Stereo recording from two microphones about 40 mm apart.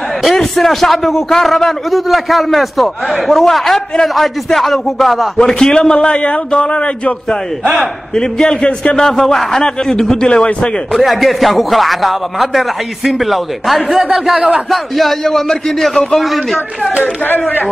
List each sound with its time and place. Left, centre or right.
0.2 s speech: centre
5.4 s a man's voice: centre
8.1 s a man's voice: centre
10.2 s a man's voice: left
10.9 s speech: centre
17.0 s speech: left